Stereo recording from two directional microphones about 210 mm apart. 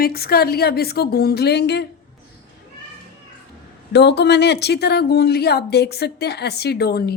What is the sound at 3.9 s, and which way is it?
Speech, 55° left (ahead or behind).